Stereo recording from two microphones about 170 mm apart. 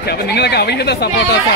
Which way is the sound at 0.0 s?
75° left (ahead or behind).